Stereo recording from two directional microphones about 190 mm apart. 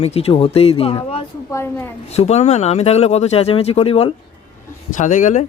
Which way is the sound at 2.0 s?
35° left (ahead or behind).